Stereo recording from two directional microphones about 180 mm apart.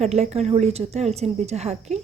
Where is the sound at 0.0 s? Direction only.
35° right (ahead or behind).